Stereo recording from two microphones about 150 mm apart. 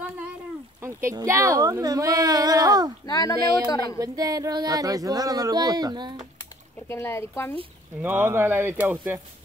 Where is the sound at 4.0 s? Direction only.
25° right (ahead or behind).